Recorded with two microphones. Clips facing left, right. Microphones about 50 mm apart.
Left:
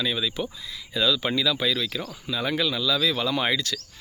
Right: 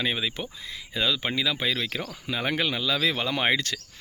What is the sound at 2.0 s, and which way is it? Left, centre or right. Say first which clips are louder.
Speech: even; right.